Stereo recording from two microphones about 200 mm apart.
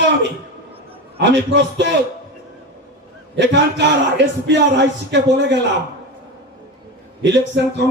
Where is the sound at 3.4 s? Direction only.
60° right (ahead or behind).